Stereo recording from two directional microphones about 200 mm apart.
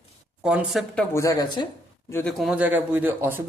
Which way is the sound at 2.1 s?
5° left (ahead or behind).